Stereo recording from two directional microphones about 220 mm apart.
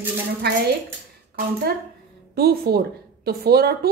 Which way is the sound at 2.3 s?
45° right (ahead or behind).